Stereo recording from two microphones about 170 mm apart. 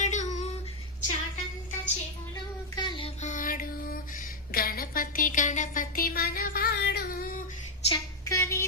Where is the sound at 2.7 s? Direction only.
30° left (ahead or behind); by 7.4 s 55° left (ahead or behind).